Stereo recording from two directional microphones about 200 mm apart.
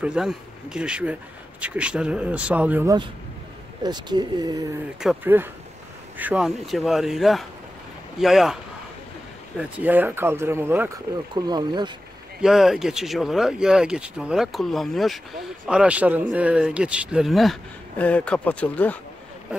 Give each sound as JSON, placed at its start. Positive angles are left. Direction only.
{"t": 0.0, "sound": "speech", "side_deg": -5}
{"t": 9.6, "sound": "speech", "side_deg": -10}
{"t": 11.3, "sound": "speech", "side_deg": -20}
{"t": 12.4, "sound": "speech", "side_deg": 0}